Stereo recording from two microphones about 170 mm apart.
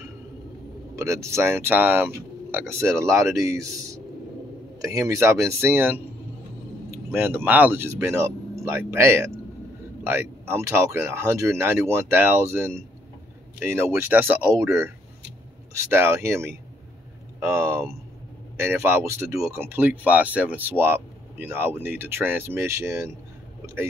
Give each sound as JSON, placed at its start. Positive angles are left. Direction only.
{"t": 0.9, "sound": "speech", "side_deg": -15}
{"t": 7.2, "sound": "speech", "side_deg": -10}